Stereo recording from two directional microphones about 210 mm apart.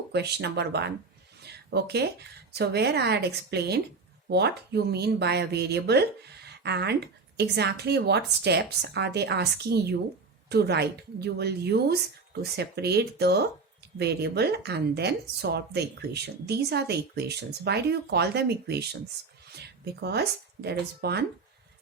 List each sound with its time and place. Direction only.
0.1 s speech: 50° right (ahead or behind)
1.4 s a sound: 50° right (ahead or behind)
2.6 s speech: 50° right (ahead or behind)